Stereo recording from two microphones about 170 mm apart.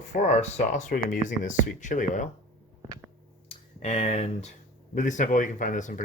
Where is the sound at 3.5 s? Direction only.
35° left (ahead or behind).